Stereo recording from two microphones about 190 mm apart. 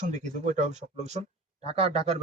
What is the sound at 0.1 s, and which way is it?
Speech, 40° right (ahead or behind).